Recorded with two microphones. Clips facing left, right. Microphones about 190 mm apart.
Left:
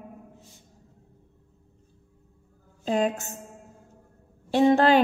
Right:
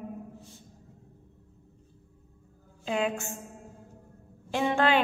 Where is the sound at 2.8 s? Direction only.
40° left (ahead or behind).